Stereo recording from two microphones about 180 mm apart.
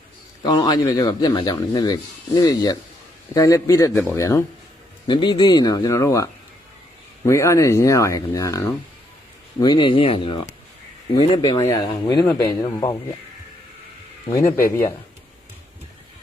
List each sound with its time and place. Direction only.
0.4 s speech: 20° left (ahead or behind)
7.3 s speech: 15° left (ahead or behind)
14.3 s speech: 15° left (ahead or behind)